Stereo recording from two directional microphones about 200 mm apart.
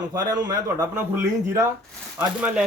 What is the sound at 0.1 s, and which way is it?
Speech, 20° right (ahead or behind).